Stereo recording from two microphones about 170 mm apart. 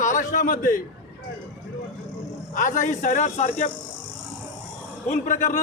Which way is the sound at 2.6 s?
50° left (ahead or behind).